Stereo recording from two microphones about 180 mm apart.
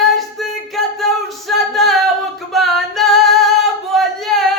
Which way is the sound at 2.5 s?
Centre (ahead or behind).